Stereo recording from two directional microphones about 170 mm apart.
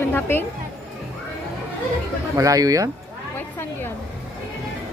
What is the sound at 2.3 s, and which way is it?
Speech, 20° right (ahead or behind).